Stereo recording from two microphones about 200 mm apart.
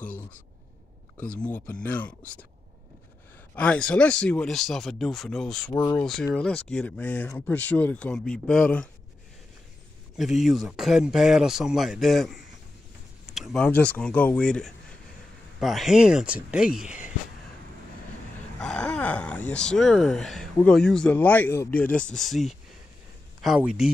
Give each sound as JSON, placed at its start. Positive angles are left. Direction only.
{"t": 1.4, "sound": "speech", "side_deg": 5}
{"t": 3.5, "sound": "speech", "side_deg": 5}
{"t": 5.7, "sound": "speech", "side_deg": 15}
{"t": 6.3, "sound": "speech", "side_deg": 5}
{"t": 10.1, "sound": "speech", "side_deg": 0}
{"t": 18.6, "sound": "speech", "side_deg": 5}